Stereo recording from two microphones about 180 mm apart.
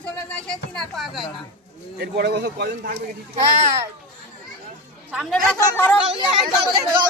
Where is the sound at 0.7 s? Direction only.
Centre (ahead or behind).